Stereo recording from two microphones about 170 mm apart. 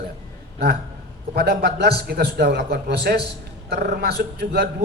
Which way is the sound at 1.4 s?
70° right (ahead or behind).